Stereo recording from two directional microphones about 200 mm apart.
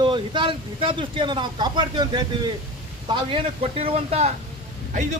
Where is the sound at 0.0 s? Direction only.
25° right (ahead or behind).